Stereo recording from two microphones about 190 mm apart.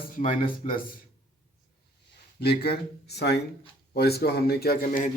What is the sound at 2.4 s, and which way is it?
A man's voice, 55° left (ahead or behind).